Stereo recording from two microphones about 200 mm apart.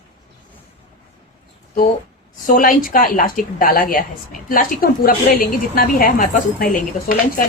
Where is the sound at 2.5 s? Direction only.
40° left (ahead or behind).